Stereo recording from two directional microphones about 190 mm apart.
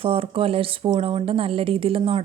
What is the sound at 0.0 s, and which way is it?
Speech, 30° right (ahead or behind).